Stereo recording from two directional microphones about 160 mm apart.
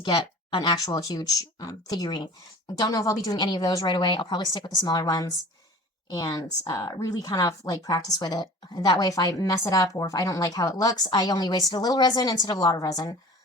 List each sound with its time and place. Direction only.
0.0 s speech: 30° left (ahead or behind)